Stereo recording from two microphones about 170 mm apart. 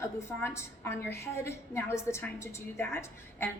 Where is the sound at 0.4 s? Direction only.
15° left (ahead or behind).